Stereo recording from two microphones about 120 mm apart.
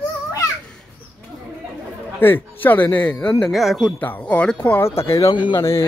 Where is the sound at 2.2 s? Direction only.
15° left (ahead or behind).